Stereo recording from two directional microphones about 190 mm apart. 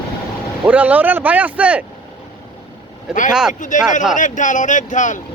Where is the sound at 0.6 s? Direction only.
5° right (ahead or behind).